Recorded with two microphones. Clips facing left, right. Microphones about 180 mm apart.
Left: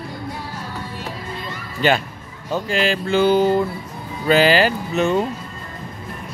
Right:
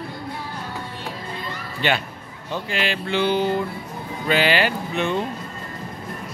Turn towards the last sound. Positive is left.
turn(degrees=40)  # may be behind; listen again after turning